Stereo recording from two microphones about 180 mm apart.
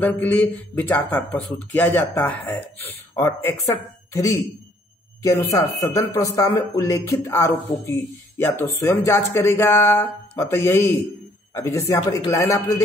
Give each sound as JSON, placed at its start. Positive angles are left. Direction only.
{"t": 0.0, "sound": "speech", "side_deg": 10}